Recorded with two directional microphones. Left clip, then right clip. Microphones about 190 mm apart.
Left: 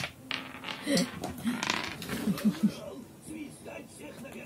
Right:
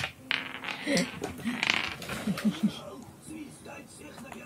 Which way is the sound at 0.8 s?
Centre (ahead or behind).